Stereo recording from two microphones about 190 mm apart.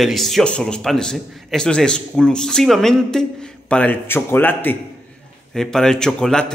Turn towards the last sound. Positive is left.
turn(degrees=5)  # may be behind; listen again after turning